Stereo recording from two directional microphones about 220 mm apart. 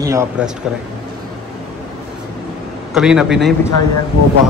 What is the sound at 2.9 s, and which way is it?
Speech, 5° right (ahead or behind).